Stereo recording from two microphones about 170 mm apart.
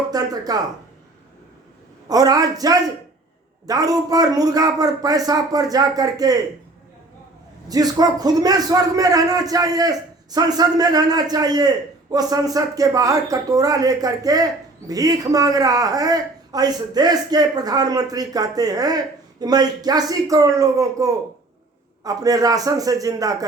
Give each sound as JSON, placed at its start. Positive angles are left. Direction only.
{"t": 0.1, "sound": "speech", "side_deg": -20}
{"t": 2.0, "sound": "speech", "side_deg": -20}
{"t": 7.7, "sound": "speech", "side_deg": -20}